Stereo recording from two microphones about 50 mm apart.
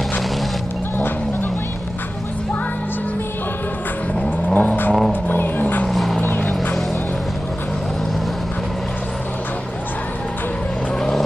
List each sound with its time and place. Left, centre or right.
4.6 s vehicle: left
5.9 s vehicle: centre
6.2 s music: left
11.0 s vehicle: centre